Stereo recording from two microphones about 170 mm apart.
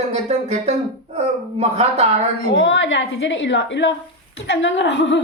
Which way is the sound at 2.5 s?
90° left.